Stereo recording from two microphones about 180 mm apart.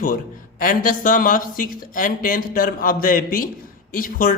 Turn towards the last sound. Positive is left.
turn(degrees=50)  # may be behind; listen again after turning